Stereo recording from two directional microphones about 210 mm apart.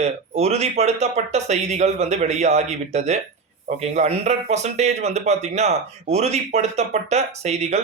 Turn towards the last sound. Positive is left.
turn(degrees=-30)  # may be behind; listen again after turning